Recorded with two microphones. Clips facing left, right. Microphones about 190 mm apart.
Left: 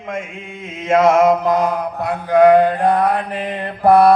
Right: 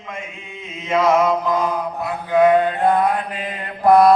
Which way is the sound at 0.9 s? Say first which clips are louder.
Left 4 dB; 50° left (ahead or behind).